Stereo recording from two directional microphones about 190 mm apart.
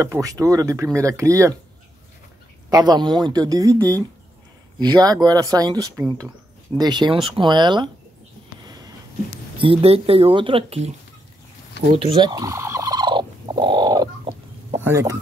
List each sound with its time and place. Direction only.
0.0 s speech: 15° right (ahead or behind)
2.7 s speech: 20° right (ahead or behind)
4.7 s speech: 20° right (ahead or behind)
8.6 s a sound: 20° right (ahead or behind)
9.6 s speech: 30° right (ahead or behind)
11.9 s fowl: 30° right (ahead or behind)
14.8 s speech: 15° right (ahead or behind)